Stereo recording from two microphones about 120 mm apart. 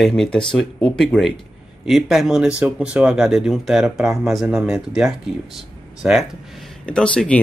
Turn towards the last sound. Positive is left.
turn(degrees=10)  # may be behind; listen again after turning